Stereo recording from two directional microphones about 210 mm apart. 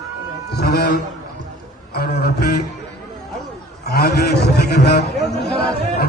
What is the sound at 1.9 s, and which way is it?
Speech, 50° left (ahead or behind).